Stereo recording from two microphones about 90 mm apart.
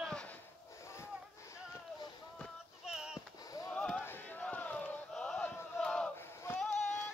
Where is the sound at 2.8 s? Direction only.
10° right (ahead or behind).